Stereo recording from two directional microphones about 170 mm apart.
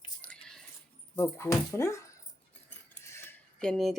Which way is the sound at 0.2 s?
5° left (ahead or behind).